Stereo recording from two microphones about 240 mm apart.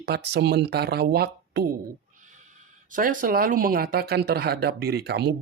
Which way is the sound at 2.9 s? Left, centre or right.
Right.